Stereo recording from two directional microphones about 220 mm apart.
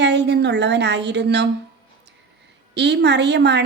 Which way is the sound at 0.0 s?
50° right (ahead or behind).